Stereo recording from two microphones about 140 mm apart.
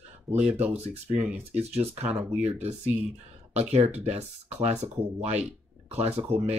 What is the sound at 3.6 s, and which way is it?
Speech, 50° right (ahead or behind).